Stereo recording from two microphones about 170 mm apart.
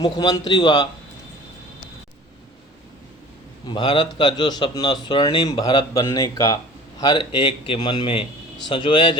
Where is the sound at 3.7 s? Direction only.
30° left (ahead or behind).